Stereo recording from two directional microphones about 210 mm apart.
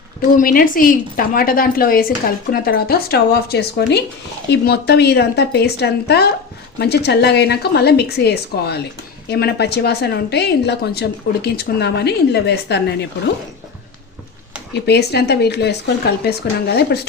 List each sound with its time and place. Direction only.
0.2 s a woman's voice: 45° left (ahead or behind)
14.7 s a woman's voice: 50° left (ahead or behind)